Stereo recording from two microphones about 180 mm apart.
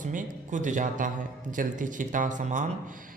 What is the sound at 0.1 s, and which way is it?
Speech, 45° right (ahead or behind).